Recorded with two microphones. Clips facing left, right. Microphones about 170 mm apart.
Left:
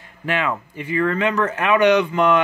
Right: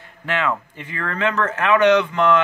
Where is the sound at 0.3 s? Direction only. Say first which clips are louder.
Even; 15° left (ahead or behind).